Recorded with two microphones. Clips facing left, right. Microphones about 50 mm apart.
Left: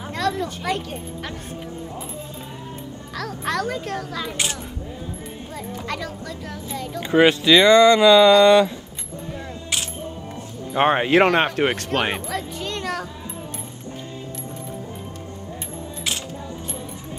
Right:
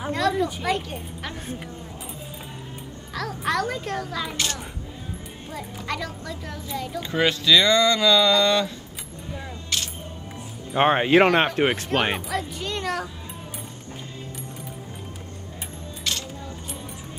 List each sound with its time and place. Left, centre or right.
0.1 s speech: centre
3.2 s speech: centre
5.9 s speech: centre
7.0 s speech: left
10.7 s a child's voice: centre